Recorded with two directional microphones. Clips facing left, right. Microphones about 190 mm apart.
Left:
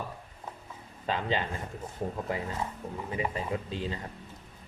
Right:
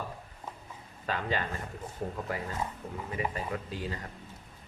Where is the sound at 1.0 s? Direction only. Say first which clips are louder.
Left 2 dB; 20° left (ahead or behind).